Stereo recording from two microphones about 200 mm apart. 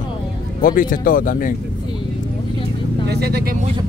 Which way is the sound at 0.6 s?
45° left (ahead or behind).